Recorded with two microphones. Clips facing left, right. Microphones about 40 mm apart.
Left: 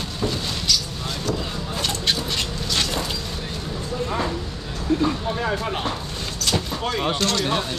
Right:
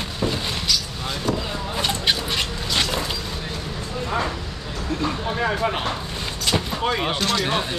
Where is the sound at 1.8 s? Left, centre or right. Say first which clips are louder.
Right 2 dB; centre.